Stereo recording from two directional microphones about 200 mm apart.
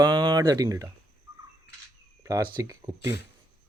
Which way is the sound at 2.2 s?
15° right (ahead or behind).